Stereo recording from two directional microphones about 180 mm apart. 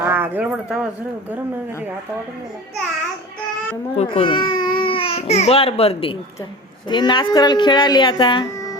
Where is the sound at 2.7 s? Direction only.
Centre (ahead or behind).